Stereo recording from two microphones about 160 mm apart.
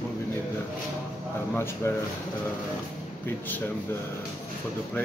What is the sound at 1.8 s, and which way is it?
Speech, 15° left (ahead or behind).